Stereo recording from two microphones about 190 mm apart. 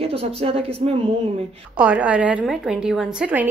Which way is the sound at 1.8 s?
10° right (ahead or behind).